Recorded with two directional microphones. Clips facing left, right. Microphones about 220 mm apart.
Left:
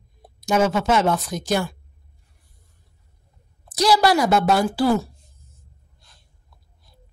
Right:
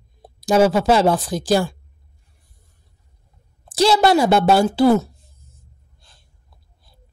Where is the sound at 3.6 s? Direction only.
25° right (ahead or behind).